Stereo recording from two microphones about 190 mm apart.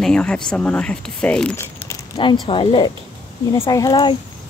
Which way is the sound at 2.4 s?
25° left (ahead or behind).